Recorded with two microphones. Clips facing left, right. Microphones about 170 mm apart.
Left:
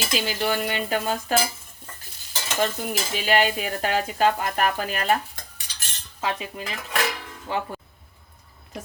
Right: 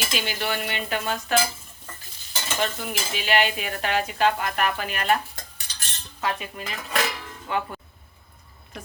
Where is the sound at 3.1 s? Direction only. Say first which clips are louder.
Left 2 dB; 40° left (ahead or behind).